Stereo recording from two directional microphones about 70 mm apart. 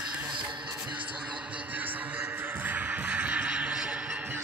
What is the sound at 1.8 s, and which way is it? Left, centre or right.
Music, right.